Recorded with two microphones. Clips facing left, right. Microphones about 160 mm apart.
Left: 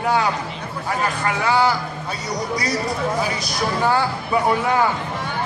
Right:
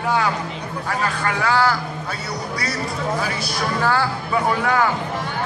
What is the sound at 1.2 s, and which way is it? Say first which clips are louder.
Speech: left 1 dB; 15° left (ahead or behind).